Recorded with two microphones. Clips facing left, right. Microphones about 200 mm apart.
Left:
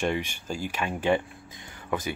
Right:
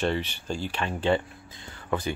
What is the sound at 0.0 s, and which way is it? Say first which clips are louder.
Speech: right 1 dB; 10° left (ahead or behind).